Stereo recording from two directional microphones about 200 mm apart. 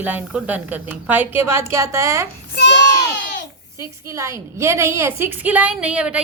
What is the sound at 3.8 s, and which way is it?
A woman's voice, 15° right (ahead or behind).